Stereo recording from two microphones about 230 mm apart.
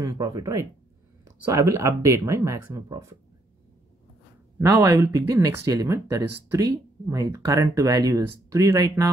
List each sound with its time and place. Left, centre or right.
0.0 s speech: centre
4.6 s speech: centre